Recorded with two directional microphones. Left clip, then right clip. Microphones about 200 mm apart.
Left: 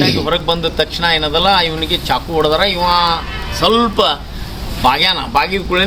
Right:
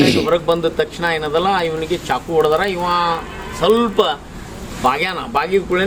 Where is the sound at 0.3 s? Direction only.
5° right (ahead or behind).